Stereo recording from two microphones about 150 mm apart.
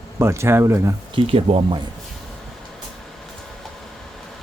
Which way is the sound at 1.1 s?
40° right (ahead or behind).